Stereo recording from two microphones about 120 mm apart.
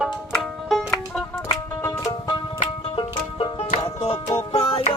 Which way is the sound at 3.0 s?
45° left (ahead or behind).